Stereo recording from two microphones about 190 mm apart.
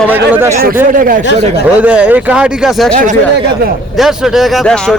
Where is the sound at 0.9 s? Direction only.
45° right (ahead or behind).